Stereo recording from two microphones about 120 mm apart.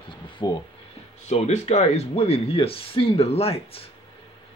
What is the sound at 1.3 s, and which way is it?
Speech, 65° left (ahead or behind).